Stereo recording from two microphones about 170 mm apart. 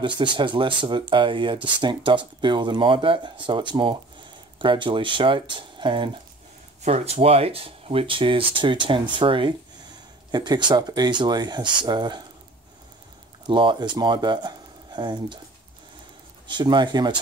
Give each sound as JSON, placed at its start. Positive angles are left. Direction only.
{"t": 0.0, "sound": "speech", "side_deg": -25}
{"t": 6.8, "sound": "speech", "side_deg": -40}
{"t": 13.5, "sound": "speech", "side_deg": -30}
{"t": 16.4, "sound": "speech", "side_deg": -25}